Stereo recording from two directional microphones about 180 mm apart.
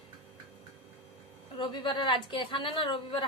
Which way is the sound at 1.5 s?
25° left (ahead or behind).